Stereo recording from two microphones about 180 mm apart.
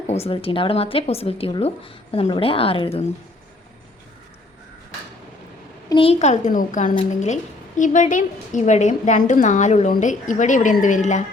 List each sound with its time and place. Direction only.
0.1 s speech: 35° left (ahead or behind)
5.9 s a woman's voice: 30° left (ahead or behind)